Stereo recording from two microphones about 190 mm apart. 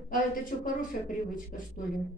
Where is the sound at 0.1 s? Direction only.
45° left (ahead or behind).